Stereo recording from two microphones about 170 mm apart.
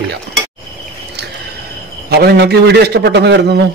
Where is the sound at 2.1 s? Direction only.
70° right (ahead or behind).